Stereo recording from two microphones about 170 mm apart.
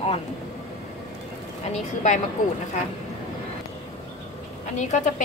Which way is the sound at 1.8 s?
40° left (ahead or behind).